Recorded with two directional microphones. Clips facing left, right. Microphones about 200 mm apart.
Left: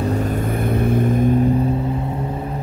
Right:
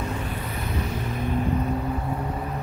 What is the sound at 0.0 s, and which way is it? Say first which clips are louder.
Vehicle: left 10 dB; 40° left (ahead or behind).